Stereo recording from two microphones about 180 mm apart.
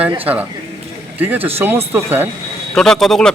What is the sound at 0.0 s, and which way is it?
Speech, 10° right (ahead or behind).